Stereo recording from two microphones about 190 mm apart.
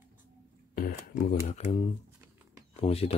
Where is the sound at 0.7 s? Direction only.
50° left (ahead or behind).